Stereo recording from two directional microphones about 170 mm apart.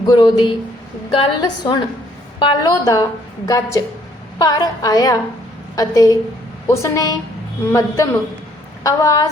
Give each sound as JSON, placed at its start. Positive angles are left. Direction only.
{"t": 0.0, "sound": "a woman's voice", "side_deg": 25}